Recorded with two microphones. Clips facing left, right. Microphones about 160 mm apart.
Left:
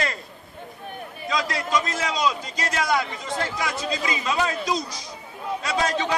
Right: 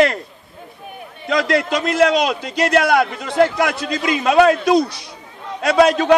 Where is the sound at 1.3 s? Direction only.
70° right (ahead or behind).